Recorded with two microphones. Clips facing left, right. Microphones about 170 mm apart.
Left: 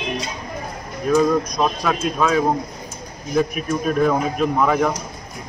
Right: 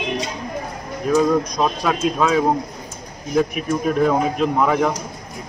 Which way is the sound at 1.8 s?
10° right (ahead or behind).